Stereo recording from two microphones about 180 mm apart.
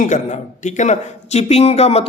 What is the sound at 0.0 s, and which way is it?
A man's voice, 45° left (ahead or behind).